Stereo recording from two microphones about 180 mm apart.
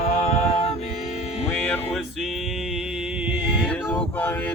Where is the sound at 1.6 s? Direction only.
10° left (ahead or behind).